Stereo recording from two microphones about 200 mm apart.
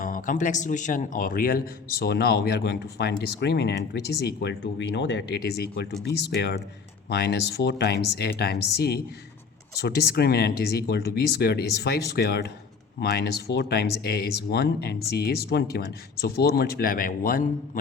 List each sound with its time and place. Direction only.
0.0 s speech: 40° left (ahead or behind)